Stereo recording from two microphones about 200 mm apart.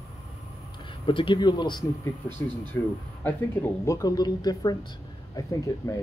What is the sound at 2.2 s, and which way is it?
Speech, 10° left (ahead or behind).